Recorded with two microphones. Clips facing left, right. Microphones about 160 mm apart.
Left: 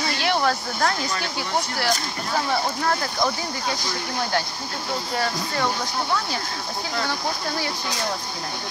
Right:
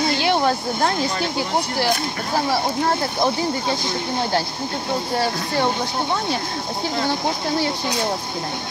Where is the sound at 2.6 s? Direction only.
25° right (ahead or behind).